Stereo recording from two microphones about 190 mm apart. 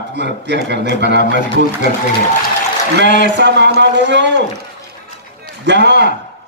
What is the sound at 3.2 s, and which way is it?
A man's voice, 65° right (ahead or behind).